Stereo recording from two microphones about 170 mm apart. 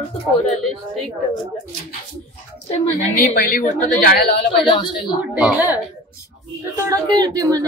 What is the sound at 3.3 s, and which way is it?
A woman's voice, 55° left (ahead or behind).